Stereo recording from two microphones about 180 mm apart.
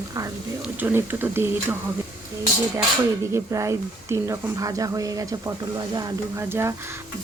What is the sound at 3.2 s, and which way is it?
A woman's voice, 15° right (ahead or behind).